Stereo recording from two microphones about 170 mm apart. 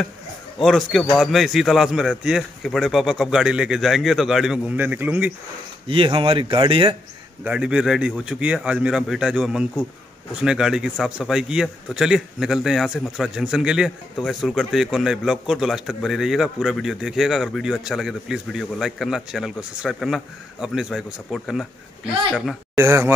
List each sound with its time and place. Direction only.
0.6 s a man's voice: centre (ahead or behind)
5.9 s speech: 30° right (ahead or behind)
7.4 s a man's voice: 5° right (ahead or behind)
22.8 s speech: 15° right (ahead or behind)